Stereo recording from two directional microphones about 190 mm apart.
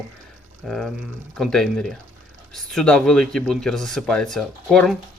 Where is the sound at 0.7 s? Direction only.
Centre (ahead or behind).